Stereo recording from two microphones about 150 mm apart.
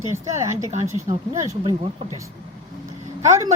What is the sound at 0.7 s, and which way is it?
Speech, 50° right (ahead or behind).